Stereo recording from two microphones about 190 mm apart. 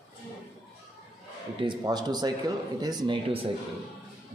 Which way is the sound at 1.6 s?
25° right (ahead or behind).